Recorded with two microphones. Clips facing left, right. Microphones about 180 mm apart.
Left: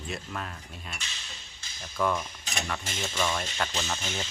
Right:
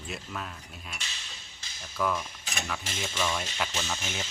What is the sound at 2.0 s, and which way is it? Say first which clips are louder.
Speech: left 2 dB; 5° right (ahead or behind).